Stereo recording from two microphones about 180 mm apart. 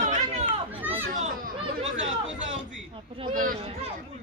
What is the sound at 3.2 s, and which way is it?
Speech, 30° right (ahead or behind).